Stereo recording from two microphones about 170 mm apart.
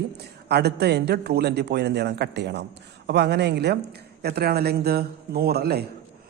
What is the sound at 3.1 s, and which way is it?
A woman's voice, 80° right.